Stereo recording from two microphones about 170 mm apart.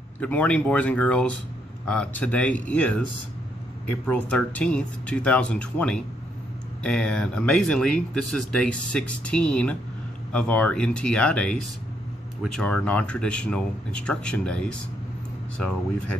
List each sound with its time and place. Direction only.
0.2 s speech: 10° left (ahead or behind)
4.1 s speech: 5° left (ahead or behind)
12.5 s speech: 5° left (ahead or behind)